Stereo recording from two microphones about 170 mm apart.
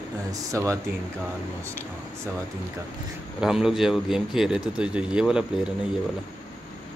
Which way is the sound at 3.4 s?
5° right (ahead or behind).